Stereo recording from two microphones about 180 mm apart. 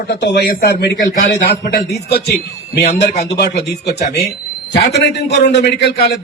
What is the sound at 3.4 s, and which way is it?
A man's voice, 65° left (ahead or behind).